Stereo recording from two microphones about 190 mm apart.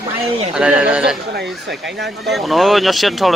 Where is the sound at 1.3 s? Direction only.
65° right (ahead or behind).